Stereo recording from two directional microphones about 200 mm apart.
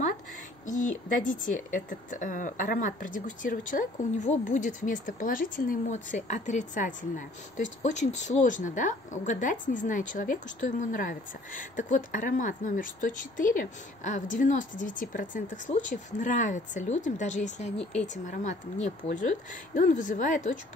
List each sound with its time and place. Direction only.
0.7 s a woman's voice: 40° left (ahead or behind)